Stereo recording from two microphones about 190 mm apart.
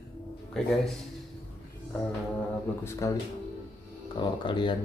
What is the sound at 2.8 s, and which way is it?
Speech, 15° left (ahead or behind).